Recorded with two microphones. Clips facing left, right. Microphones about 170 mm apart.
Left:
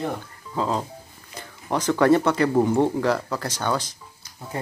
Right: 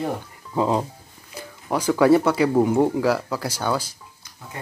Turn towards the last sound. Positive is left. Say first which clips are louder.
# right 1 dB
turn(degrees=-10)  # may be behind; listen again after turning